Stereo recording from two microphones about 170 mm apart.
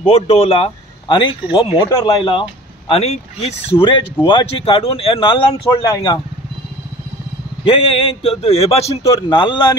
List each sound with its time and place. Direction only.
0.0 s speech: 40° left (ahead or behind)
2.9 s speech: 40° left (ahead or behind)
7.6 s speech: 30° left (ahead or behind)